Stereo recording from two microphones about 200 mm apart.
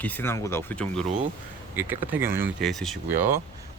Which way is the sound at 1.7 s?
10° right (ahead or behind).